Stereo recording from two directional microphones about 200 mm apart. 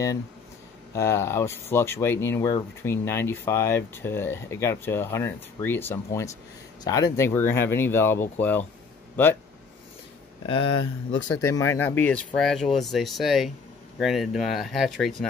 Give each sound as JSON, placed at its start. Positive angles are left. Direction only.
{"t": 0.9, "sound": "speech", "side_deg": 15}
{"t": 10.4, "sound": "speech", "side_deg": 25}
{"t": 10.8, "sound": "speech", "side_deg": 75}
{"t": 11.2, "sound": "speech", "side_deg": 20}